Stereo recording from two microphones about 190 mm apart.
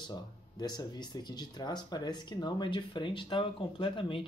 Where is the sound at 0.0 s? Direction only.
20° left (ahead or behind).